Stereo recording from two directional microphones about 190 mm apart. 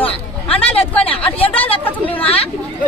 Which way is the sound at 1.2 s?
30° left (ahead or behind).